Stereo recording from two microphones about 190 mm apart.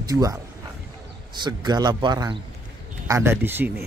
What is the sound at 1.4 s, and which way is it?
A man's voice, 20° right (ahead or behind).